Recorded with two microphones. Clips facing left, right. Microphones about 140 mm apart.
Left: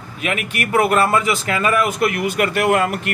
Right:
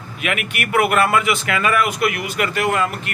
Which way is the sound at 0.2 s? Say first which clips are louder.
Left 1 dB; 35° left (ahead or behind).